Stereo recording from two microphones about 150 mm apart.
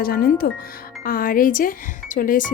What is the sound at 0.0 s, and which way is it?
Speech, 75° left (ahead or behind).